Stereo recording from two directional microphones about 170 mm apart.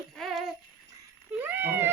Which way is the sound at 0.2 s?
Centre (ahead or behind).